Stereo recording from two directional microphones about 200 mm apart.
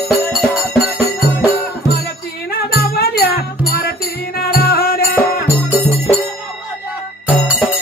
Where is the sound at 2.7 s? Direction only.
50° left (ahead or behind).